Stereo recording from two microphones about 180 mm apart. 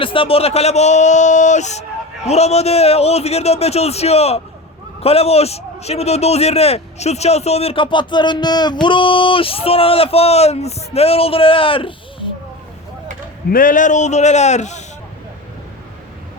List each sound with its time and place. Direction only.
0.0 s a man's voice: 30° left (ahead or behind)
13.5 s a man's voice: 50° left (ahead or behind)